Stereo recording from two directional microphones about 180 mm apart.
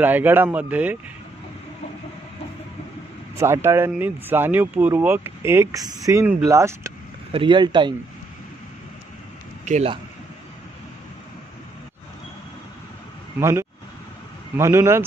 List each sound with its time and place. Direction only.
0.0 s speech: 10° right (ahead or behind)
3.3 s speech: 15° right (ahead or behind)
9.7 s a man's voice: 40° right (ahead or behind)
13.4 s speech: 15° right (ahead or behind)